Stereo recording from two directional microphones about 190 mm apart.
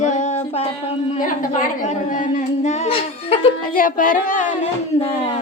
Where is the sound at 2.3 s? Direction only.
40° left (ahead or behind).